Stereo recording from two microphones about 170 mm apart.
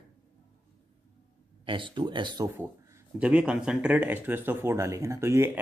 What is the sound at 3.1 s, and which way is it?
Speech, 5° right (ahead or behind).